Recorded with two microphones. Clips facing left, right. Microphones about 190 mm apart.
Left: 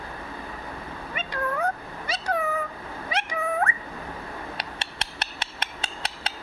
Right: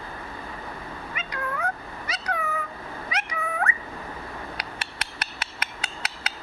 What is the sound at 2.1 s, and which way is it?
Cat, 30° left (ahead or behind).